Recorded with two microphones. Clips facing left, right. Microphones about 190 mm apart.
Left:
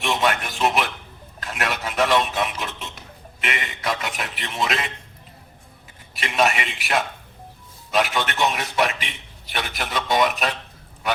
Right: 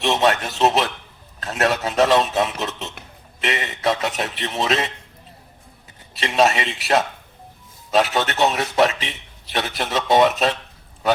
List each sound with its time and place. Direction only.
0.0 s speech: 40° right (ahead or behind)
6.2 s speech: 35° right (ahead or behind)